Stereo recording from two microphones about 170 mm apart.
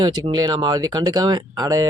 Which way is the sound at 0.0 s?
25° right (ahead or behind).